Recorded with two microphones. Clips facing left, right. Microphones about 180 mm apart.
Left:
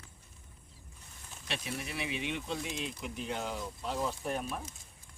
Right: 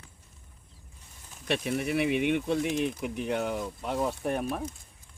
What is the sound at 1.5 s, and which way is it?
Speech, 60° right (ahead or behind).